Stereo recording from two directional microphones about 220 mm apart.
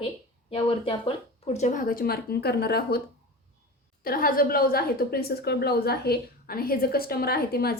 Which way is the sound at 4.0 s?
40° left (ahead or behind).